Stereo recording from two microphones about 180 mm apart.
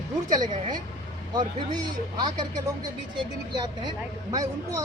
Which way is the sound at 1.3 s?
25° right (ahead or behind).